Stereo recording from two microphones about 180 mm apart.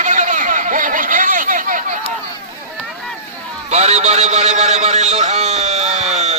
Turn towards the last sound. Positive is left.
turn(degrees=-40)  # may be behind; listen again after turning